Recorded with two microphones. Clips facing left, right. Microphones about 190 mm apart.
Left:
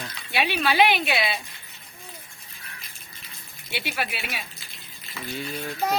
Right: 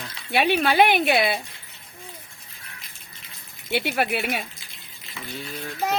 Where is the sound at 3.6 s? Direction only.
55° right (ahead or behind).